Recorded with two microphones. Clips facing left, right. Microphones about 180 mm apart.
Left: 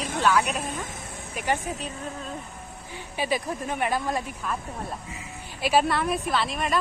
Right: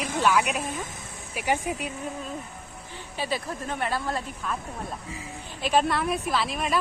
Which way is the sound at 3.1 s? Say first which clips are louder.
Left 3 dB; 15° left (ahead or behind).